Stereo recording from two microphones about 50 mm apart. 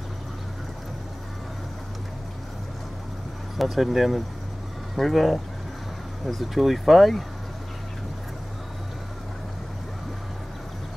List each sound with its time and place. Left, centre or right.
3.5 s speech: centre